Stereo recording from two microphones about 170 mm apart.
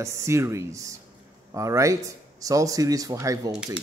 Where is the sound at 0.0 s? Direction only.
15° right (ahead or behind).